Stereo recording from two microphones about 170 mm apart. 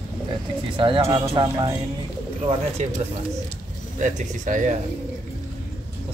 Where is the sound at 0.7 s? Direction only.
30° right (ahead or behind).